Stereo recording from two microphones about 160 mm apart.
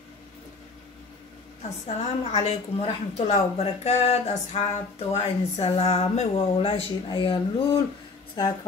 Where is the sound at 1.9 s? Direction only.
40° left (ahead or behind).